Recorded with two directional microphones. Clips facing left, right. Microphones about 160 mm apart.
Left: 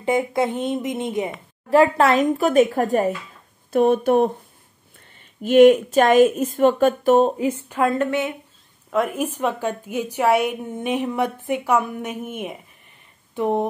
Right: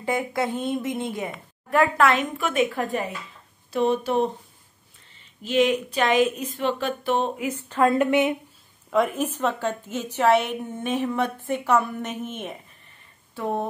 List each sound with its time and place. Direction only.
0.0 s a woman's voice: 20° left (ahead or behind)
7.6 s a woman's voice: 10° left (ahead or behind)
7.9 s a woman's voice: 15° right (ahead or behind)
8.9 s a woman's voice: 5° left (ahead or behind)